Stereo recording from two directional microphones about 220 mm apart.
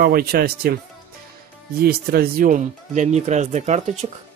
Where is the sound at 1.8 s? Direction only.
45° right (ahead or behind).